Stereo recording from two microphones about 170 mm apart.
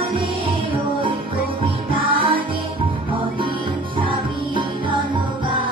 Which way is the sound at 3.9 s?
30° right (ahead or behind).